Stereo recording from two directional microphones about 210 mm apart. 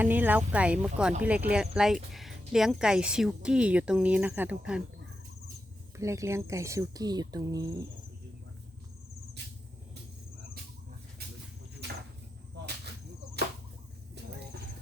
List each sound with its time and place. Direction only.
0.0 s a woman's voice: 10° right (ahead or behind)
6.0 s speech: 15° right (ahead or behind)
13.4 s whip: 50° right (ahead or behind)
14.2 s a sound: 50° right (ahead or behind)